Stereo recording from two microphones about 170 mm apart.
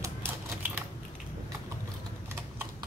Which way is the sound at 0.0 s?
10° right (ahead or behind).